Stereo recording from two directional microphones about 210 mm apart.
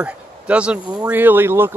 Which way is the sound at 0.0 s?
5° right (ahead or behind).